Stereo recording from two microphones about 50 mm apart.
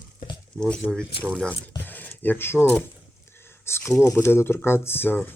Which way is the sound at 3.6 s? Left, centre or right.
Left.